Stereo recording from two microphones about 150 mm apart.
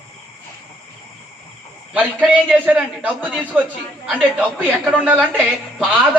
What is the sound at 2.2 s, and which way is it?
A man's voice, 5° right (ahead or behind).